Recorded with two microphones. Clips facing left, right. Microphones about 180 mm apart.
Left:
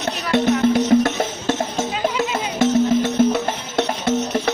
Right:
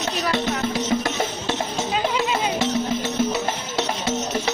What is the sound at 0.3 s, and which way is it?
Music, 55° left (ahead or behind).